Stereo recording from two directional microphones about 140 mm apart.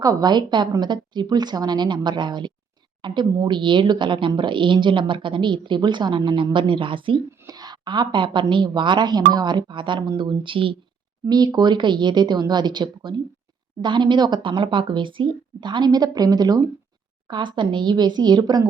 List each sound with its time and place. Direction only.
0.0 s speech: 25° right (ahead or behind)
7.3 s speech: 25° right (ahead or behind)